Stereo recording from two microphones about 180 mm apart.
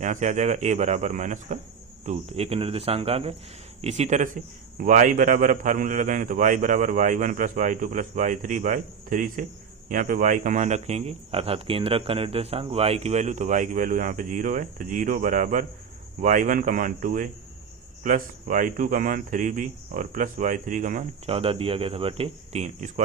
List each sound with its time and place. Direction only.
0.0 s speech: 40° right (ahead or behind)
21.2 s speech: 30° right (ahead or behind)